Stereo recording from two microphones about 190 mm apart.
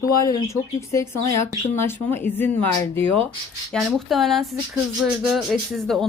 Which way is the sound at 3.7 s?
Centre (ahead or behind).